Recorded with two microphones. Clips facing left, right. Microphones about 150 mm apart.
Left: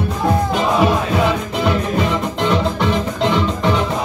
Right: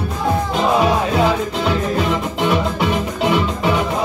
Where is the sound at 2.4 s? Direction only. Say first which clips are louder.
Left 1 dB; 5° right (ahead or behind).